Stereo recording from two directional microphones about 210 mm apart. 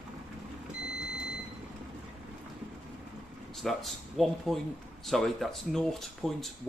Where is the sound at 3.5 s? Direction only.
Centre (ahead or behind).